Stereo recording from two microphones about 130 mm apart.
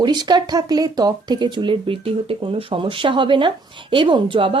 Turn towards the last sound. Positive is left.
turn(degrees=-45)  # may be behind; listen again after turning